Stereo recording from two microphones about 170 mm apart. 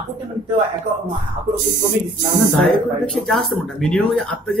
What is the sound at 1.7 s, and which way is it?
Speech, 50° right (ahead or behind).